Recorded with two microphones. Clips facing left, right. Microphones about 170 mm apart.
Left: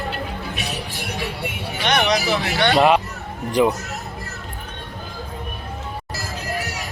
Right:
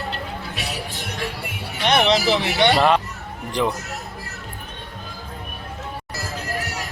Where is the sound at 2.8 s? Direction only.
5° left (ahead or behind).